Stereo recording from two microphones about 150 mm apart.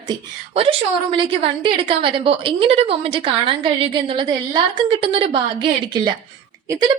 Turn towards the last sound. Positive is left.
turn(degrees=-30)  # may be behind; listen again after turning